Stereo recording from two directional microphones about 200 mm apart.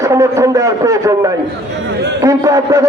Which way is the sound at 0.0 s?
15° right (ahead or behind).